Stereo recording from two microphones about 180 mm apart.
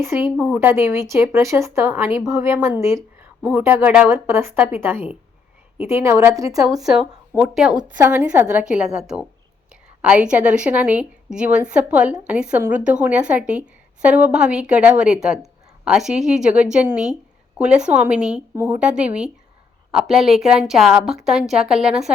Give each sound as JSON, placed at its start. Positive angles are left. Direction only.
{"t": 0.0, "sound": "a woman's voice", "side_deg": -10}
{"t": 6.7, "sound": "a woman's voice", "side_deg": 0}